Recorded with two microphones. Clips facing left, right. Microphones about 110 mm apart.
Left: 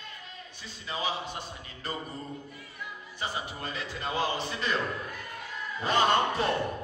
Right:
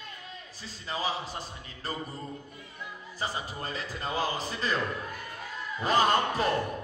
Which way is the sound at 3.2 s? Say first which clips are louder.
Right 1 dB; 35° right (ahead or behind).